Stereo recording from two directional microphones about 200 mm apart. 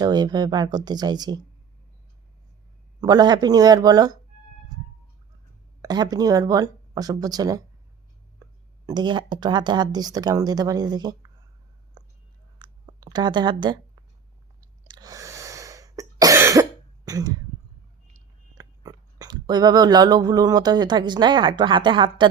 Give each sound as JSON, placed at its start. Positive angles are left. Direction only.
{"t": 0.0, "sound": "speech", "side_deg": -20}
{"t": 3.0, "sound": "speech", "side_deg": -20}
{"t": 5.8, "sound": "speech", "side_deg": -20}
{"t": 8.9, "sound": "speech", "side_deg": -20}
{"t": 12.0, "sound": "chewing", "side_deg": -20}
{"t": 12.5, "sound": "clicking", "side_deg": -20}
{"t": 14.8, "sound": "cough", "side_deg": -20}
{"t": 17.1, "sound": "speech", "side_deg": -20}
{"t": 18.5, "sound": "speech", "side_deg": -20}